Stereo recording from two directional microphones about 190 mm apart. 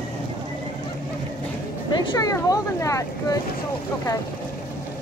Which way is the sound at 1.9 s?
20° left (ahead or behind).